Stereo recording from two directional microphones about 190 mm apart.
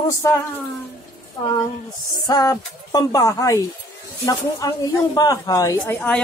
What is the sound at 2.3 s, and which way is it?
A man's voice, 20° left (ahead or behind).